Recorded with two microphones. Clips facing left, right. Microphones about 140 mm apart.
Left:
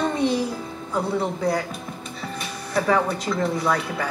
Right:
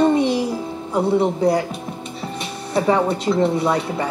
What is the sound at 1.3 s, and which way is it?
A woman's voice, 30° right (ahead or behind).